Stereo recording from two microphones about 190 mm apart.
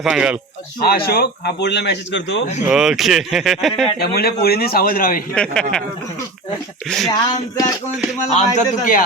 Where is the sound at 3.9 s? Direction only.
55° left (ahead or behind).